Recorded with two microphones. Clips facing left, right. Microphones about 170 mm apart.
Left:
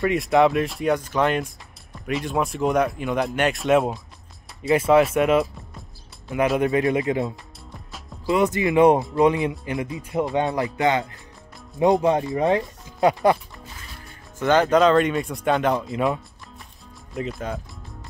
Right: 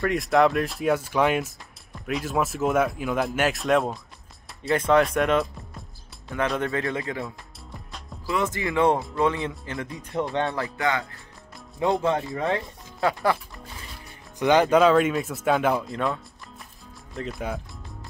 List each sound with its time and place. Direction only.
0.0 s speech: centre (ahead or behind)
4.6 s music: 5° left (ahead or behind)
6.3 s speech: 10° left (ahead or behind)
14.4 s speech: 10° right (ahead or behind)
17.1 s speech: centre (ahead or behind)